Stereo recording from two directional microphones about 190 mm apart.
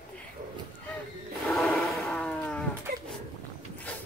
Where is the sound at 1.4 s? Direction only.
Centre (ahead or behind).